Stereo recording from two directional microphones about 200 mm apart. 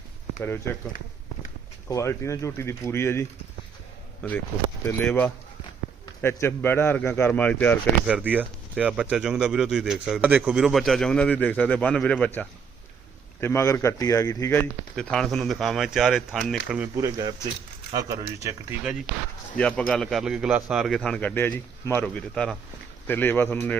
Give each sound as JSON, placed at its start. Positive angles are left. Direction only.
{"t": 0.4, "sound": "a man's voice", "side_deg": 10}
{"t": 1.9, "sound": "a man's voice", "side_deg": 15}
{"t": 8.0, "sound": "a man's voice", "side_deg": -5}
{"t": 14.9, "sound": "speech", "side_deg": 0}
{"t": 17.1, "sound": "speech", "side_deg": -20}
{"t": 19.5, "sound": "a man's voice", "side_deg": 5}